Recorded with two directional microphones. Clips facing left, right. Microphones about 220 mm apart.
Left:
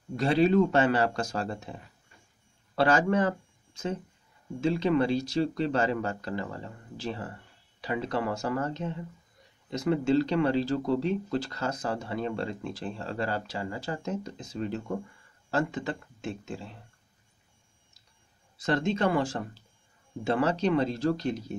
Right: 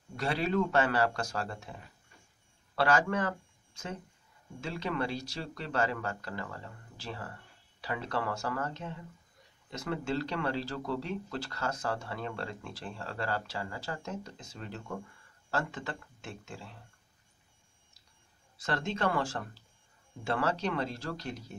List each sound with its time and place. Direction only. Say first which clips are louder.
0.2 s speech: left 8 dB; 25° left (ahead or behind)
2.7 s speech: left 4 dB; 25° left (ahead or behind)
18.6 s speech: left 6 dB; 20° left (ahead or behind)